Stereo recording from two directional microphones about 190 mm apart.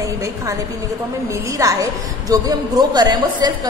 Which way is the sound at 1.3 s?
15° right (ahead or behind).